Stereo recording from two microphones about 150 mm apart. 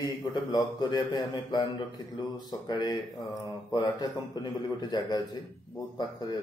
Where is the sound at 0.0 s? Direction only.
25° left (ahead or behind).